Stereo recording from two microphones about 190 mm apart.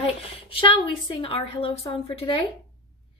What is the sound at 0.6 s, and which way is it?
A woman's voice, 25° left (ahead or behind).